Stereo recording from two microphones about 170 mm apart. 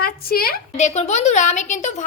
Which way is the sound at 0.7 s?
40° left (ahead or behind).